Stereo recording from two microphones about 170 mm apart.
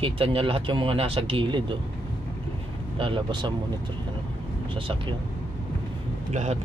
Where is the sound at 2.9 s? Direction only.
30° right (ahead or behind).